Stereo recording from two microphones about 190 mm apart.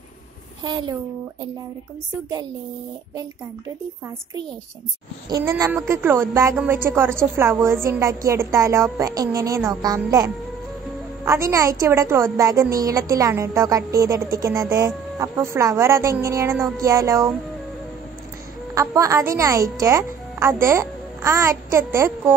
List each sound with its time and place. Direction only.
0.7 s speech: 25° right (ahead or behind)
5.3 s a woman's voice: 15° right (ahead or behind)
18.8 s a woman's voice: 15° right (ahead or behind)